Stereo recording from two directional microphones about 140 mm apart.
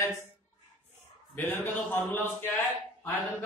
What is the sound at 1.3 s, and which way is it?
A man's voice, 15° left (ahead or behind).